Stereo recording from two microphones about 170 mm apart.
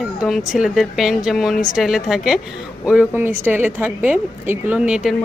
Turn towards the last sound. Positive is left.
turn(degrees=-5)  # may be behind; listen again after turning